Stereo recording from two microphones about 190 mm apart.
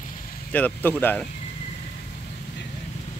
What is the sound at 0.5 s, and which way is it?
Speech, 10° left (ahead or behind).